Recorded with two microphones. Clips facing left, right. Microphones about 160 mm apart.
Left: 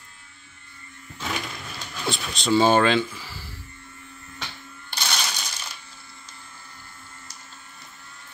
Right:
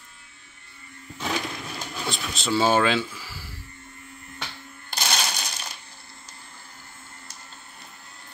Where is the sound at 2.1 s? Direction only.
5° right (ahead or behind).